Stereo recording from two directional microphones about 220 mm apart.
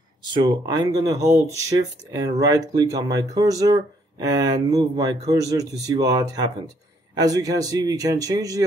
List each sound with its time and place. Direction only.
0.2 s speech: 20° right (ahead or behind)